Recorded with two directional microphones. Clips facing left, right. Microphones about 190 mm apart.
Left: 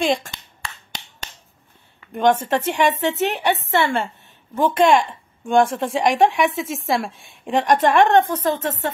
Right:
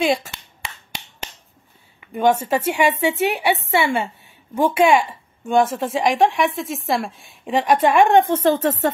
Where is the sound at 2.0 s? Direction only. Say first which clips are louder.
Even; 10° right (ahead or behind).